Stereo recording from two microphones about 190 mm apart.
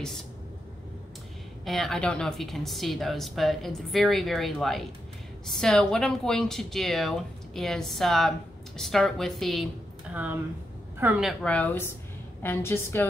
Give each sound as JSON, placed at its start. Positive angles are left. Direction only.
{"t": 1.6, "sound": "a woman's voice", "side_deg": 0}
{"t": 11.0, "sound": "a woman's voice", "side_deg": -5}